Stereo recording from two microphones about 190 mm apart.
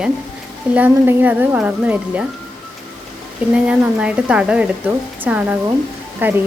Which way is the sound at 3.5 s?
5° right (ahead or behind).